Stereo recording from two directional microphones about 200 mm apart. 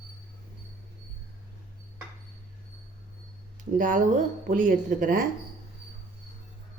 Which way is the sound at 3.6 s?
40° right (ahead or behind).